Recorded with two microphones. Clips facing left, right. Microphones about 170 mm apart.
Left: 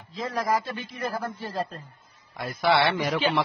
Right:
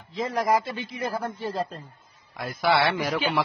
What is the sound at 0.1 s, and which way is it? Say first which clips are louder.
Speech: right 3 dB; 20° right (ahead or behind).